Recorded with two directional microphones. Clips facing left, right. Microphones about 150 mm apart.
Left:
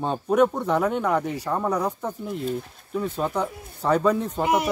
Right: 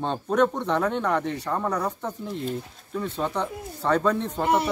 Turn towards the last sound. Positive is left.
turn(degrees=10)  # may be behind; listen again after turning